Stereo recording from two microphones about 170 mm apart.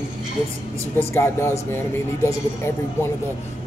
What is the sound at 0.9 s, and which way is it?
Speech, 15° left (ahead or behind).